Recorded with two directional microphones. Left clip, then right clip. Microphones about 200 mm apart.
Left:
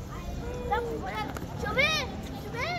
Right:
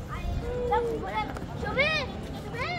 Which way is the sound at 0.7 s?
40° left (ahead or behind).